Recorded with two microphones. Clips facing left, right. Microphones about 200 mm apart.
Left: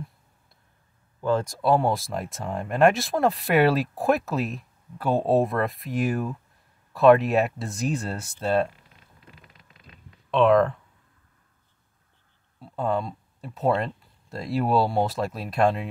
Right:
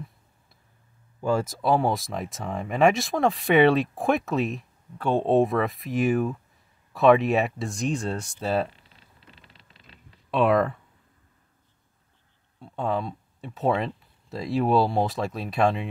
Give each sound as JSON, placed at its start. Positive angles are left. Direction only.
{"t": 1.2, "sound": "speech", "side_deg": -5}
{"t": 8.7, "sound": "a sound", "side_deg": -30}
{"t": 10.3, "sound": "speech", "side_deg": -5}
{"t": 12.5, "sound": "speech", "side_deg": 0}